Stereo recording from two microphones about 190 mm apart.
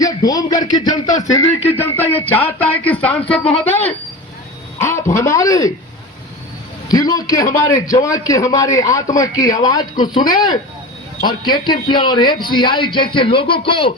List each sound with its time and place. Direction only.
0.0 s a man's voice: 20° left (ahead or behind)
6.8 s a man's voice: 20° left (ahead or behind)